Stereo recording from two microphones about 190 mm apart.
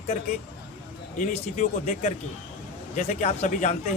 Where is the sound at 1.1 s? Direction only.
40° left (ahead or behind).